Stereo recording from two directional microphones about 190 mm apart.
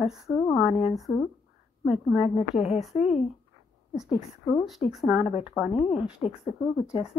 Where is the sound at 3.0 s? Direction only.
35° left (ahead or behind).